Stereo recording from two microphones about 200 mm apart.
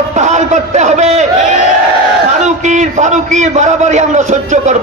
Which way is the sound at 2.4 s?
35° right (ahead or behind).